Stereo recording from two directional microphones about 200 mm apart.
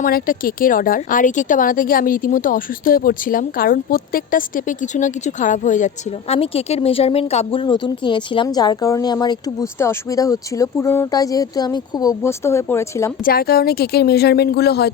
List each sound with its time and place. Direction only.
0.0 s speech: 45° left (ahead or behind); by 13.1 s 15° left (ahead or behind)
13.2 s speech: 50° left (ahead or behind)